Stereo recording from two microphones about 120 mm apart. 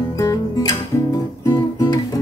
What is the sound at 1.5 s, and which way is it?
Guitar, 40° left (ahead or behind).